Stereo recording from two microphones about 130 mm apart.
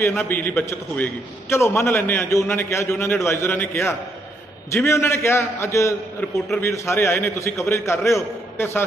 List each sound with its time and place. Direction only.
0.2 s a man's voice: 15° left (ahead or behind)